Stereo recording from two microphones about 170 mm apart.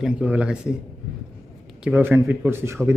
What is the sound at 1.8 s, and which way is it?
Speech, 15° right (ahead or behind).